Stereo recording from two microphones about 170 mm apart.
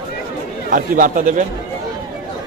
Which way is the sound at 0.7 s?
50° right (ahead or behind).